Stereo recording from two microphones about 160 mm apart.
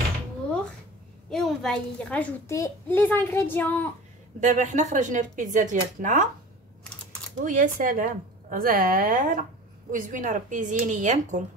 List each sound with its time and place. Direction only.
1.3 s a woman's voice: centre (ahead or behind)
4.4 s a woman's voice: 50° right (ahead or behind)
7.4 s a woman's voice: 55° right (ahead or behind)